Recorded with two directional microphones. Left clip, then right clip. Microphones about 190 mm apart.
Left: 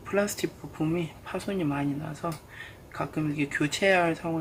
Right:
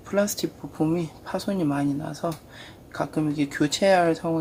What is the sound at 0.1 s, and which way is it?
Speech, 20° right (ahead or behind).